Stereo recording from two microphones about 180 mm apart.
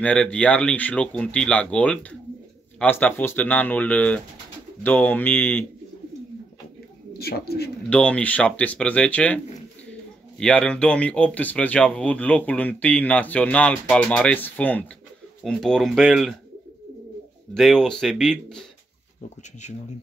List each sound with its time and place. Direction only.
0.0 s speech: 5° left (ahead or behind)
7.2 s speech: 60° left (ahead or behind)
7.9 s speech: 5° left (ahead or behind)
17.6 s speech: centre (ahead or behind)
19.6 s speech: 40° left (ahead or behind)